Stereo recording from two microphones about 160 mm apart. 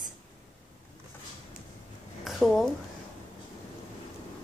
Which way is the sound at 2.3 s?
Centre (ahead or behind).